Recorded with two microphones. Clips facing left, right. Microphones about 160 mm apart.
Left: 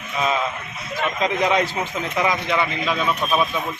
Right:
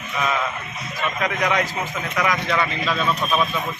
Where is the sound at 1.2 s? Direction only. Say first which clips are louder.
Left 3 dB; 25° left (ahead or behind).